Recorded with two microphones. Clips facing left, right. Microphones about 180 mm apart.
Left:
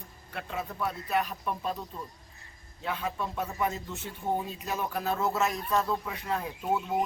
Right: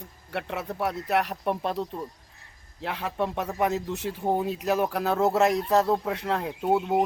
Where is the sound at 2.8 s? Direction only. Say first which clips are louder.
Right 4 dB; 75° right (ahead or behind).